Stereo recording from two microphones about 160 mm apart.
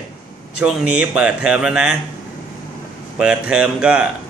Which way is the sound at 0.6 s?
5° right (ahead or behind).